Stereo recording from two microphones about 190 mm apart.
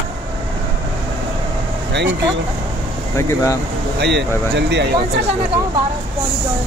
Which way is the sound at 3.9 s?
60° right (ahead or behind).